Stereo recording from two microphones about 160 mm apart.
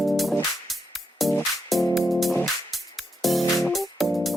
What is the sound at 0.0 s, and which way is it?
Music, centre (ahead or behind).